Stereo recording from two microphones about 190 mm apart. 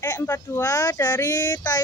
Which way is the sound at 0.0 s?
15° left (ahead or behind).